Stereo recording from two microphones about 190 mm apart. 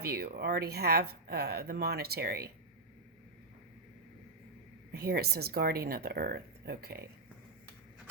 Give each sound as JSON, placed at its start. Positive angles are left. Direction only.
{"t": 0.0, "sound": "speech", "side_deg": -55}
{"t": 4.9, "sound": "speech", "side_deg": -55}